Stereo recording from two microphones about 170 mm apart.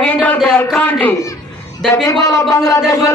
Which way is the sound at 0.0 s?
10° left (ahead or behind).